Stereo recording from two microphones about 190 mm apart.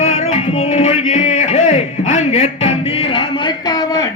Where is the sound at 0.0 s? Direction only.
35° left (ahead or behind).